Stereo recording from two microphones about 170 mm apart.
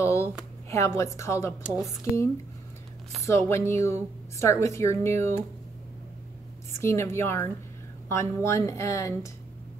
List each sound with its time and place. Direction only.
0.0 s speech: 15° left (ahead or behind)
1.6 s speech: centre (ahead or behind)
3.3 s a woman's voice: 15° left (ahead or behind)
6.8 s a woman's voice: 15° left (ahead or behind)